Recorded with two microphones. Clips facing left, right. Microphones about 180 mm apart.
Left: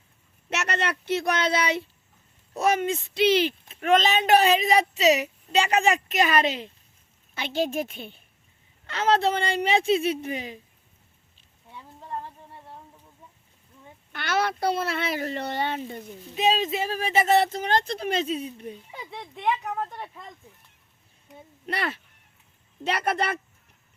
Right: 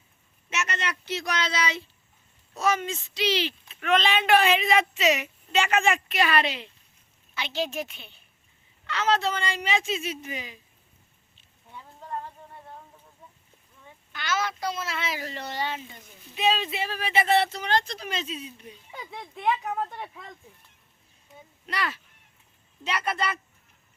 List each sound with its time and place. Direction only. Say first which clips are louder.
0.5 s speech: left 4 dB; 65° left (ahead or behind)
14.1 s speech: left 3 dB; 60° left (ahead or behind)
16.0 s speech: left 4 dB; 40° left (ahead or behind)
18.9 s speech: left 1 dB; centre (ahead or behind)
21.7 s speech: left 2 dB; 55° left (ahead or behind)